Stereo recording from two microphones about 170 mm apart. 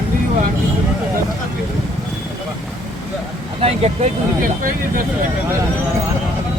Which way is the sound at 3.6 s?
40° right (ahead or behind).